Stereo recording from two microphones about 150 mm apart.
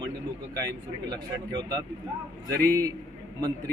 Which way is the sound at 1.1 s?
25° right (ahead or behind).